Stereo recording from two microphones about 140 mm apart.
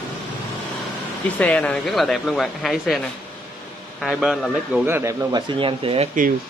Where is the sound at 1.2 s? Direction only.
10° left (ahead or behind).